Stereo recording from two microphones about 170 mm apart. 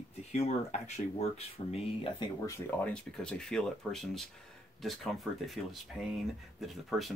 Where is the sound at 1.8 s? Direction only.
30° left (ahead or behind).